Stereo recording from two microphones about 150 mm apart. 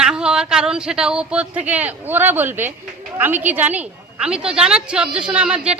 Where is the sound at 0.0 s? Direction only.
5° right (ahead or behind).